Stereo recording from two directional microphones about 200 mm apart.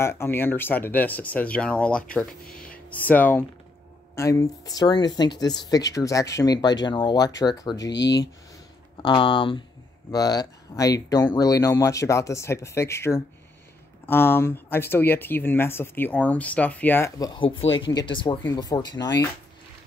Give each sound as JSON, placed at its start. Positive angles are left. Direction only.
{"t": 0.0, "sound": "speech", "side_deg": 10}
{"t": 9.0, "sound": "speech", "side_deg": 25}